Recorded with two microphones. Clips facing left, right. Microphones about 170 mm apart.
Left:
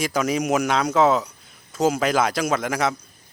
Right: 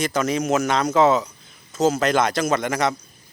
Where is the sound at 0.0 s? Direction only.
10° left (ahead or behind).